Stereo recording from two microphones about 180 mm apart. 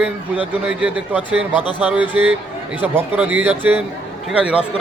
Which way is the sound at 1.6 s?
25° left (ahead or behind).